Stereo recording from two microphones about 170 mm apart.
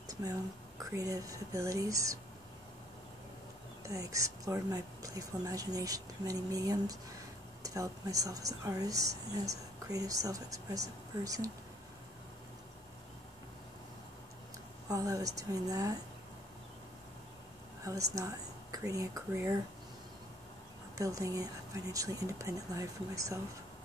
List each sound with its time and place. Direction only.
0.1 s a sound: 20° right (ahead or behind)
0.8 s speech: 20° right (ahead or behind)
3.8 s speech: 20° right (ahead or behind)
14.9 s speech: 20° right (ahead or behind)
17.8 s speech: 20° right (ahead or behind)
21.0 s speech: 20° right (ahead or behind)